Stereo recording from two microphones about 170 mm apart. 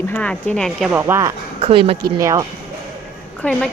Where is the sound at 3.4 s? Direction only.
5° left (ahead or behind).